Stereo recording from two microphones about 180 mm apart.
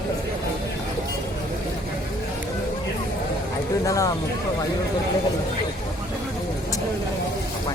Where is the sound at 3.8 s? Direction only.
20° left (ahead or behind).